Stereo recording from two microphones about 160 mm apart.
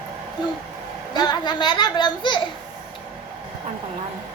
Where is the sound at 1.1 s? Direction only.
25° left (ahead or behind).